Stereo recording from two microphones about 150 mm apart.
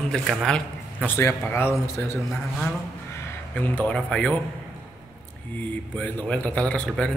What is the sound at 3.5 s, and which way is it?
Speech, 10° left (ahead or behind).